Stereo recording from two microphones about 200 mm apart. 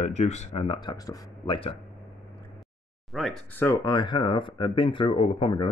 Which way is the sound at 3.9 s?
20° left (ahead or behind).